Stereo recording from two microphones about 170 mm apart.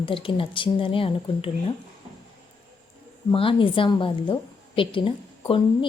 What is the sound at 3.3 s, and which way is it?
A woman's voice, 30° left (ahead or behind).